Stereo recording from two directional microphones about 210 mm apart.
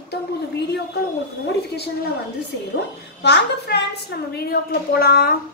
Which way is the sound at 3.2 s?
50° left (ahead or behind).